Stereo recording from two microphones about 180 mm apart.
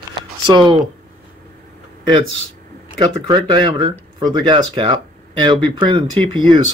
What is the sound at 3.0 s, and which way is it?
Speech, 25° right (ahead or behind).